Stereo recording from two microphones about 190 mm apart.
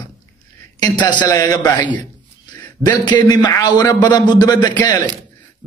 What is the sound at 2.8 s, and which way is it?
A man's voice, 25° left (ahead or behind).